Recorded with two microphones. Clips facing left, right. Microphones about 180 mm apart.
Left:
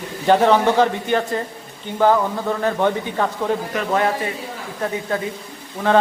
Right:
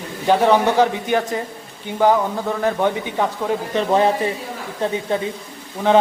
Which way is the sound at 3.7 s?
30° right (ahead or behind).